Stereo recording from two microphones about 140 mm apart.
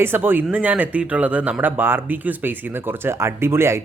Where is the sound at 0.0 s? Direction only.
15° right (ahead or behind).